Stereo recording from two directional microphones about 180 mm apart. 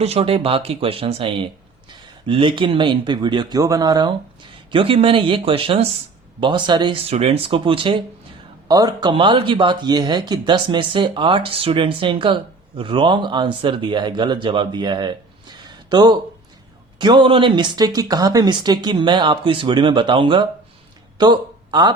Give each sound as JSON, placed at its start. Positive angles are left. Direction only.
{"t": 0.0, "sound": "speech", "side_deg": -35}